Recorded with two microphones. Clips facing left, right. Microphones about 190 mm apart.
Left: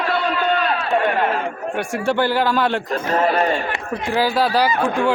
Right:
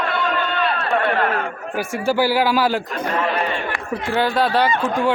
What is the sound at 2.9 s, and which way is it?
Speech, 35° left (ahead or behind).